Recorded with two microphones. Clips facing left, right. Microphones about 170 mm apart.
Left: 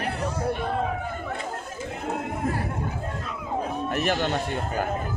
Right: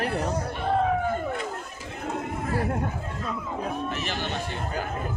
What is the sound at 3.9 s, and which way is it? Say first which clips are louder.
Speech: left 6 dB; 50° left (ahead or behind).